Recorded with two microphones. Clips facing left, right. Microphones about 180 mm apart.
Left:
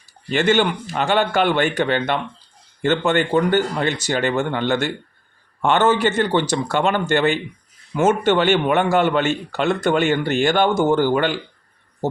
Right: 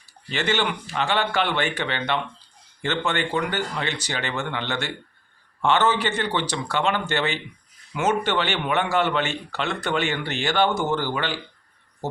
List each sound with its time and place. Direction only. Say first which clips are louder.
0.3 s a man's voice: left 7 dB; 50° left (ahead or behind)